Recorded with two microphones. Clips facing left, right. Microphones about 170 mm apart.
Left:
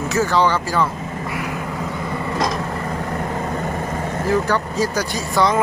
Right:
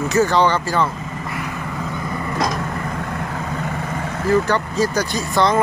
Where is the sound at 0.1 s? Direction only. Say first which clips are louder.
Right 1 dB; 5° left (ahead or behind).